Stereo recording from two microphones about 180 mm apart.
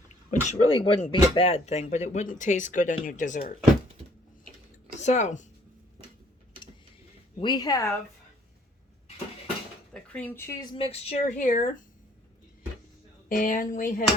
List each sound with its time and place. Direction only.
0.3 s speech: 35° left (ahead or behind)
4.9 s speech: 40° left (ahead or behind)
7.3 s speech: 25° left (ahead or behind)
9.9 s speech: 10° left (ahead or behind); by 11.8 s 50° left (ahead or behind)
13.2 s speech: 50° left (ahead or behind)